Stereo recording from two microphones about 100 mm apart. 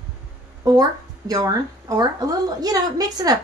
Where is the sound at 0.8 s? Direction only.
40° right (ahead or behind).